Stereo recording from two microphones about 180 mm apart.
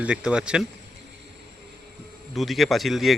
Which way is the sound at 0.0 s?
5° right (ahead or behind).